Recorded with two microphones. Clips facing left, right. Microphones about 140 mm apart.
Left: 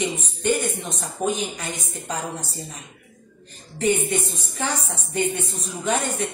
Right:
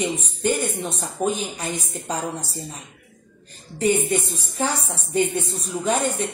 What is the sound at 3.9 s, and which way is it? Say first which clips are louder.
Speech: right 1 dB; 35° right (ahead or behind).